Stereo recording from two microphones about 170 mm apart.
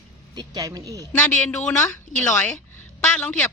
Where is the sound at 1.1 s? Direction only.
10° left (ahead or behind).